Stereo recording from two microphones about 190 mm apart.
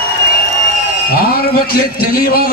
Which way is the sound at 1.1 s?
50° left (ahead or behind).